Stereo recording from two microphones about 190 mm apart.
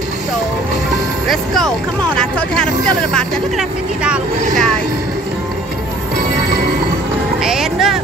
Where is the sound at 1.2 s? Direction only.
Centre (ahead or behind).